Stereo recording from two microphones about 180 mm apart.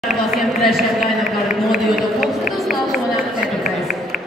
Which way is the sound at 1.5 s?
Centre (ahead or behind).